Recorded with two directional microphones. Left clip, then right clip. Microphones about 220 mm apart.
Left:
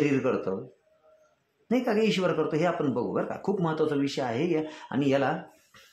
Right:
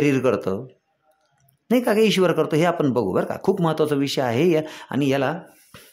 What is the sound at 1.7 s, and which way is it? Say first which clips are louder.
Speech: right 7 dB; 50° right (ahead or behind).